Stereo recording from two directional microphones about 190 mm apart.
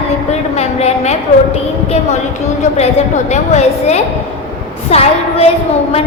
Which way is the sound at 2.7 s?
35° left (ahead or behind).